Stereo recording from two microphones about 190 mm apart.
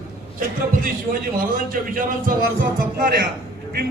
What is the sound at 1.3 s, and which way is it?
A man's voice, 45° right (ahead or behind).